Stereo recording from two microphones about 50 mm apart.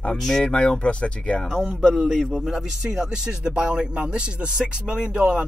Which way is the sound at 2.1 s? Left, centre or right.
Centre.